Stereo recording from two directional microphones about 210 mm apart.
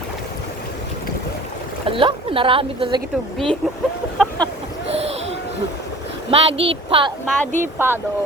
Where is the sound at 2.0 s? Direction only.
25° right (ahead or behind).